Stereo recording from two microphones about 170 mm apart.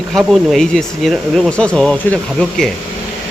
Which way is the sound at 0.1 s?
Centre (ahead or behind).